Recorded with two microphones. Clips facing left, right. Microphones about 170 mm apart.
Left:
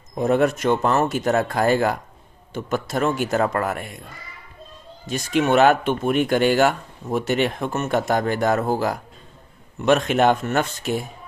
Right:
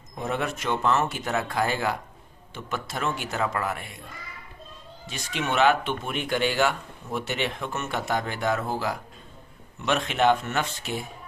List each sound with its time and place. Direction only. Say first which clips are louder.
0.2 s speech: left 10 dB; 45° left (ahead or behind)
5.0 s speech: left 10 dB; 45° left (ahead or behind)